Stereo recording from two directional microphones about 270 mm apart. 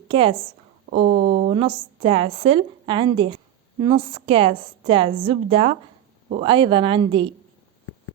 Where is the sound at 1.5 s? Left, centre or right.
Centre.